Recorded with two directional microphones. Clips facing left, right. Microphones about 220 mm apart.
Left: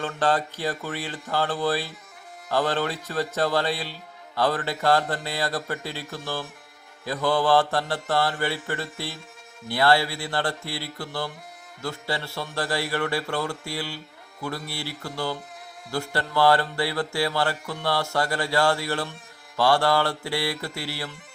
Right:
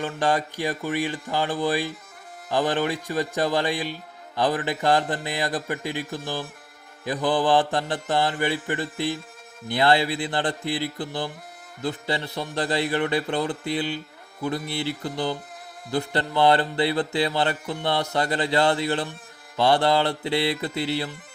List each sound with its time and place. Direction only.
0.0 s mantra: 15° right (ahead or behind)
9.6 s a man's voice: 20° right (ahead or behind)